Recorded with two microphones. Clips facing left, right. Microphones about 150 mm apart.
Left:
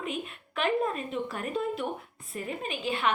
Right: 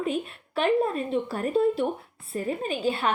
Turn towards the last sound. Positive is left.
turn(degrees=-35)  # may be behind; listen again after turning